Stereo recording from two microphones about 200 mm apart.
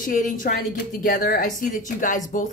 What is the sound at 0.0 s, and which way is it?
Speech, 40° left (ahead or behind).